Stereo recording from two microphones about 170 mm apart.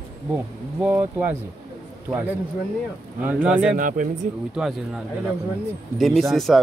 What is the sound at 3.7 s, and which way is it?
Speech, 50° right (ahead or behind).